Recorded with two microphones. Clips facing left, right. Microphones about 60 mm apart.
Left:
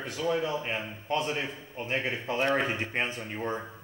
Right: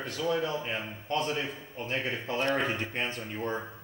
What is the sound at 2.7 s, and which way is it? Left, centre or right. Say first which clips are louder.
Speech: left 2 dB; left.